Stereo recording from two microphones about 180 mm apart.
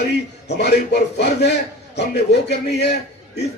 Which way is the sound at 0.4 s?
65° left (ahead or behind).